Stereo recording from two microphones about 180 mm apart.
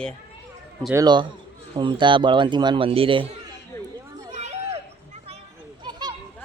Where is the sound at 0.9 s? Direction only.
25° right (ahead or behind).